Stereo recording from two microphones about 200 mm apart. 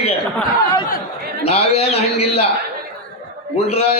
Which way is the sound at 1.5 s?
30° left (ahead or behind).